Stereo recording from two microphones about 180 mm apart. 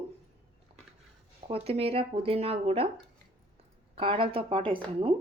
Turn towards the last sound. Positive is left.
turn(degrees=-30)  # may be behind; listen again after turning